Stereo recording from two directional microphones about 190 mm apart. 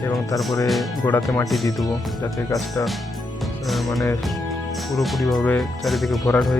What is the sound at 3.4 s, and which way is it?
Music, centre (ahead or behind).